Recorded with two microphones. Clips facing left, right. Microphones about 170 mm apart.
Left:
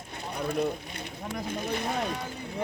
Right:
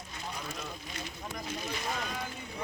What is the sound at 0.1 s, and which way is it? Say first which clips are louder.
Speech: left 10 dB; 60° left (ahead or behind).